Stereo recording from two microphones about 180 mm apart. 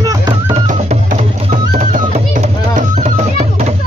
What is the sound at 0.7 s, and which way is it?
Music, 40° right (ahead or behind).